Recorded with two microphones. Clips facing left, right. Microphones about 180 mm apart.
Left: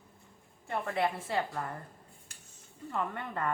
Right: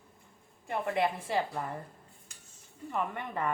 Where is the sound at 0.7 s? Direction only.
20° right (ahead or behind).